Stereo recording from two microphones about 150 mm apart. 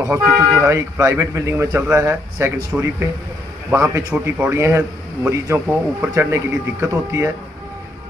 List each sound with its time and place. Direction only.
0.0 s a man's voice: 20° right (ahead or behind)
2.7 s speech: 10° right (ahead or behind)
3.7 s a man's voice: 20° right (ahead or behind)